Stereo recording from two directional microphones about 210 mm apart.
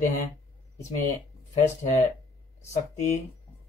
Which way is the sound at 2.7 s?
30° left (ahead or behind).